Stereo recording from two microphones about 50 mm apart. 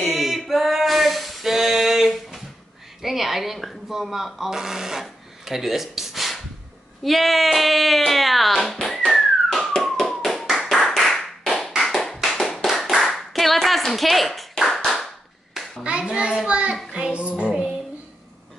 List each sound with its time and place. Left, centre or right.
0.0 s a sound: centre
3.0 s speech: centre
5.0 s a sound: centre
7.0 s speech: centre
8.8 s a sound: centre
9.8 s tap: centre
10.9 s clapping: centre
12.4 s tap: centre
12.7 s clapping: centre
15.8 s a child's voice: right
16.9 s child singing: right